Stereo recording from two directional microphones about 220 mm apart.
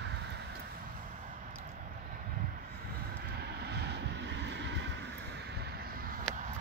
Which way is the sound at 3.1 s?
50° right (ahead or behind).